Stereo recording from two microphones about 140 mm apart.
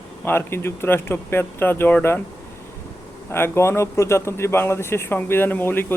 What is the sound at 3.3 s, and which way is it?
Speech, 20° left (ahead or behind).